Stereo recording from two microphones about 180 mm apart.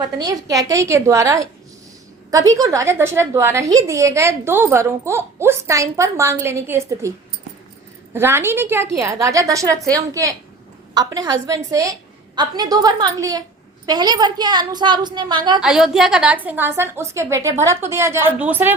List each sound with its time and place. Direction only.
0.2 s a woman's voice: 20° right (ahead or behind)
8.1 s a woman's voice: 15° right (ahead or behind)
15.6 s a woman's voice: 5° right (ahead or behind)